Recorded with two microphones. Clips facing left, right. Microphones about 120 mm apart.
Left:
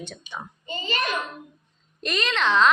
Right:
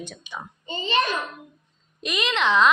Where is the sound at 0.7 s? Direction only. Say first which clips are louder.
Right 6 dB; 25° right (ahead or behind).